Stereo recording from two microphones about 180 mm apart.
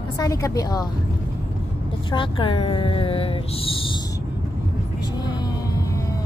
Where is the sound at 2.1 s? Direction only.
25° left (ahead or behind).